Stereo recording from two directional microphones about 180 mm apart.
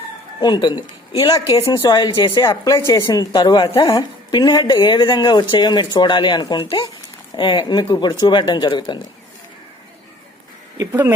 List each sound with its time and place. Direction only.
0.4 s speech: 25° left (ahead or behind)
10.8 s speech: 10° right (ahead or behind)